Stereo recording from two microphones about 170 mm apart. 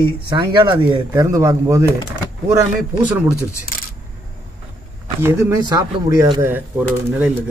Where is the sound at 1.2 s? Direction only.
20° right (ahead or behind).